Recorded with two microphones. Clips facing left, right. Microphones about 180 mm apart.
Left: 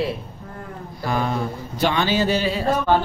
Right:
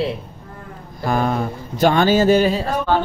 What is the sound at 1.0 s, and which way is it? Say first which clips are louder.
Speech: right 4 dB; 50° right (ahead or behind).